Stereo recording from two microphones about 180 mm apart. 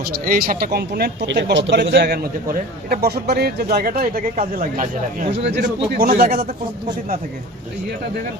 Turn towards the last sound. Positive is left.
turn(degrees=-60)  # may be behind; listen again after turning